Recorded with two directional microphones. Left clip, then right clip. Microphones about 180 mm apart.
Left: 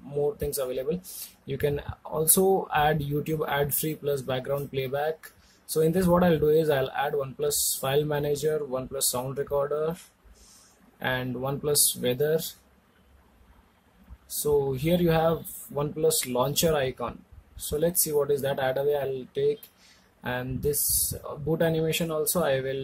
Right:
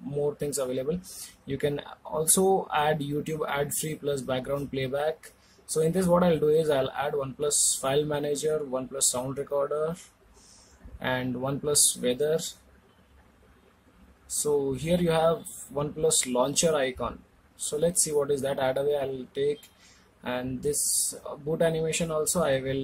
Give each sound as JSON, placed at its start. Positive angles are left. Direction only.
{"t": 0.2, "sound": "speech", "side_deg": 10}
{"t": 14.4, "sound": "speech", "side_deg": 10}
{"t": 21.1, "sound": "speech", "side_deg": 10}